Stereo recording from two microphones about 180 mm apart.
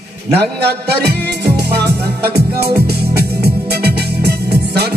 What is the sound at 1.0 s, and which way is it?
Music, 65° right (ahead or behind).